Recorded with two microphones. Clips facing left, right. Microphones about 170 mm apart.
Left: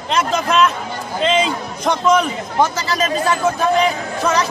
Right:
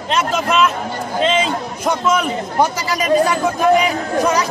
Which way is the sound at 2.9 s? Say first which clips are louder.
Right 3 dB; 15° right (ahead or behind).